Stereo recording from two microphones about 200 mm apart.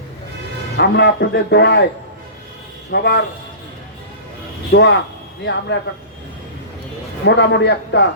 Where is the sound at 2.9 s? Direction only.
55° left (ahead or behind).